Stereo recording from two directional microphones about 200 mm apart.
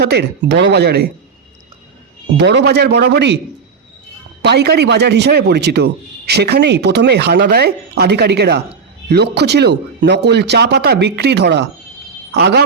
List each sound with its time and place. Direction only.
0.0 s speech: 55° right (ahead or behind)
2.4 s speech: 55° right (ahead or behind)
4.4 s speech: 55° right (ahead or behind)